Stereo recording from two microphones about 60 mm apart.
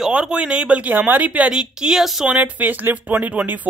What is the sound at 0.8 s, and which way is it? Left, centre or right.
Speech, right.